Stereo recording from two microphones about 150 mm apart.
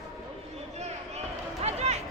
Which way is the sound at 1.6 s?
45° right (ahead or behind).